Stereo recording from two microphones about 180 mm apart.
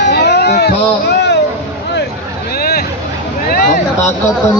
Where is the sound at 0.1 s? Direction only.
65° left (ahead or behind).